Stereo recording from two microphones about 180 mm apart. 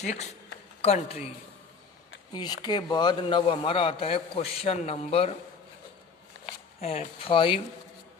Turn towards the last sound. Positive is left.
turn(degrees=30)  # may be behind; listen again after turning